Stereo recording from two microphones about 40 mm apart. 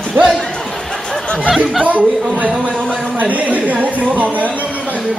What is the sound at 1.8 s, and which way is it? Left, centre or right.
Speech, right.